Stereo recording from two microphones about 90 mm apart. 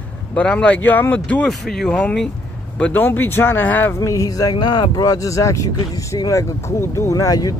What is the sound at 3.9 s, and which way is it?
Speech, 35° left (ahead or behind).